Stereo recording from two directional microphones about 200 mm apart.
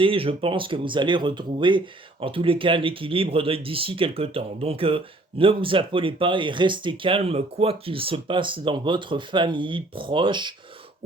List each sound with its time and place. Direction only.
0.0 s speech: 25° right (ahead or behind)